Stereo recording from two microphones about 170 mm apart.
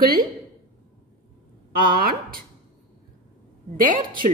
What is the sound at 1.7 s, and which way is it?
Speech, 60° right (ahead or behind).